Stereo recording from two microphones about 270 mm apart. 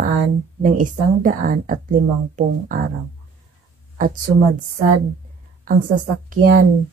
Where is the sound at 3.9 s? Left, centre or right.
Right.